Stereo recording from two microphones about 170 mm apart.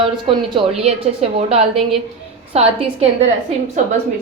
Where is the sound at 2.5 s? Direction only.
35° right (ahead or behind).